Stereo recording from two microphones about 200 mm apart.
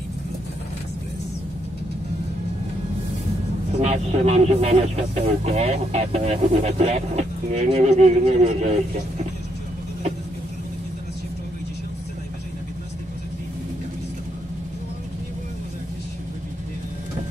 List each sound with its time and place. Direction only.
3.7 s speech: 35° right (ahead or behind)